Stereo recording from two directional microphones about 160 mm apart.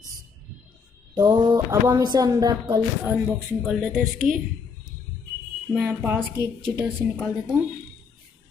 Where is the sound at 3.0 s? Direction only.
5° right (ahead or behind).